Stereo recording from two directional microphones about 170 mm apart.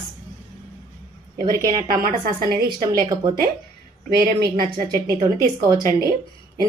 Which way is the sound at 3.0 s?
20° right (ahead or behind).